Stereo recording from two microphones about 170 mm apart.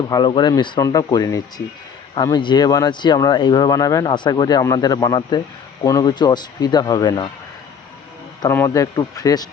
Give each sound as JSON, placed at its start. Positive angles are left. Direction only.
{"t": 0.1, "sound": "speech", "side_deg": 25}
{"t": 8.4, "sound": "speech", "side_deg": 15}